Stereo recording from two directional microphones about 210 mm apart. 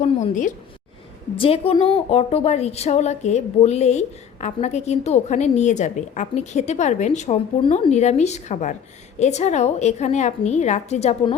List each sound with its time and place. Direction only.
0.0 s a woman's voice: 30° left (ahead or behind)